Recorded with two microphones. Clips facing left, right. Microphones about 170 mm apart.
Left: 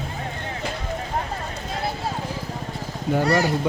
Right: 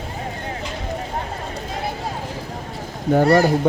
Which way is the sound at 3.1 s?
50° right (ahead or behind).